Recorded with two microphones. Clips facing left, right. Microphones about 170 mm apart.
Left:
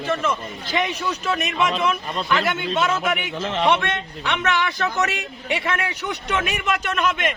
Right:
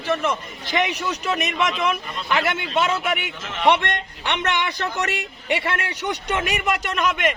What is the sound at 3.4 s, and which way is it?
Speech, 30° left (ahead or behind).